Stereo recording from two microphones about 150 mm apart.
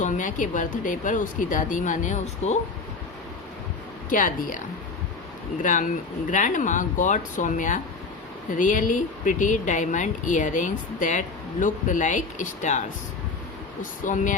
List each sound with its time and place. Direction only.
0.0 s speech: 60° left (ahead or behind)
4.1 s speech: 60° left (ahead or behind)
5.6 s speech: 60° left (ahead or behind)
14.0 s speech: 60° left (ahead or behind)